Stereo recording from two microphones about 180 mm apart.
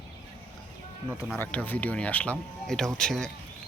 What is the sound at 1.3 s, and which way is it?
Speech, 5° left (ahead or behind).